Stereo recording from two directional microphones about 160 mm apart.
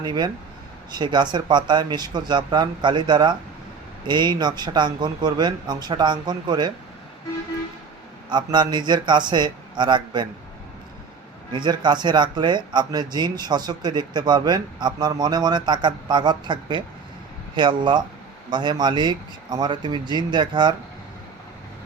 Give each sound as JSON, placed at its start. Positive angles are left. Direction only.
{"t": 0.0, "sound": "speech", "side_deg": -25}
{"t": 8.3, "sound": "speech", "side_deg": -30}
{"t": 11.5, "sound": "speech", "side_deg": -30}